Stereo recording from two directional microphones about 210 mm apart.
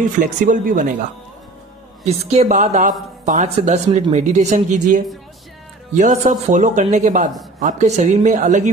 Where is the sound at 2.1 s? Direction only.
30° right (ahead or behind).